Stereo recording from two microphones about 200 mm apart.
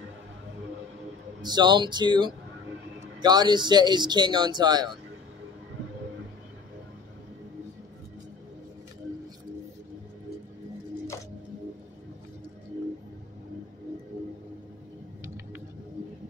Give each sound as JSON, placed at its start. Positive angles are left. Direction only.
{"t": 1.4, "sound": "speech", "side_deg": -20}